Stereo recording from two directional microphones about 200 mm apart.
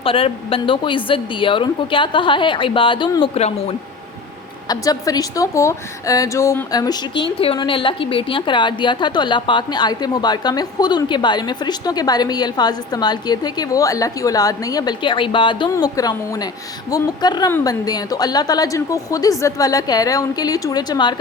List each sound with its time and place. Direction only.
0.0 s a woman's voice: 25° left (ahead or behind)
4.7 s a woman's voice: 20° left (ahead or behind)